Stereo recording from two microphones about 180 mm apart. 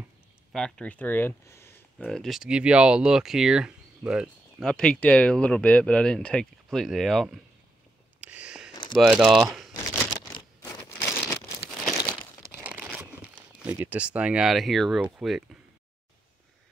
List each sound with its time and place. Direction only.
0.5 s speech: 5° left (ahead or behind)
2.0 s speech: centre (ahead or behind)
8.2 s a sound: 5° right (ahead or behind)
8.9 s speech: 5° right (ahead or behind)
10.3 s a sound: 20° left (ahead or behind)
13.0 s speech: 5° right (ahead or behind)